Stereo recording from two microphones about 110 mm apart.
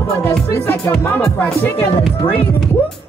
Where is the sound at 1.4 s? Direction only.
15° left (ahead or behind).